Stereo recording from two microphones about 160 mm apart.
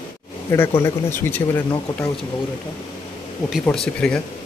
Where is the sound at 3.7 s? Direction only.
5° left (ahead or behind).